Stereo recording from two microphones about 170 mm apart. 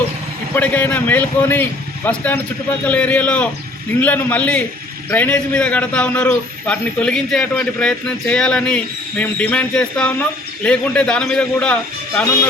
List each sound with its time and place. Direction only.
0.5 s a man's voice: 10° left (ahead or behind)